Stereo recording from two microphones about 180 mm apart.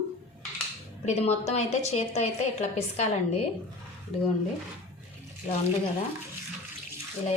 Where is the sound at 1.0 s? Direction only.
35° left (ahead or behind).